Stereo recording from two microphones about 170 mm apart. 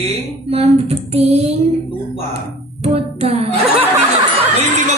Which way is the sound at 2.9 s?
35° right (ahead or behind).